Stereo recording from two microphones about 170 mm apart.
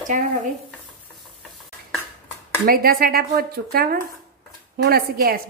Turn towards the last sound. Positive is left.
turn(degrees=-60)  # may be behind; listen again after turning